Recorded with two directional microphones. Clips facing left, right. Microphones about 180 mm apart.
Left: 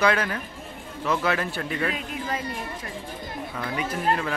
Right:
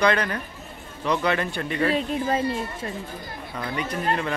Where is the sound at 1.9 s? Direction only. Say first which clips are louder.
Right 7 dB; 30° right (ahead or behind).